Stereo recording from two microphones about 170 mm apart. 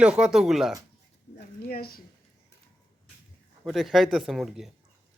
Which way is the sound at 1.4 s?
65° left (ahead or behind).